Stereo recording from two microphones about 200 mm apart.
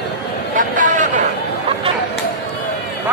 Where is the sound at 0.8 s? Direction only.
40° right (ahead or behind).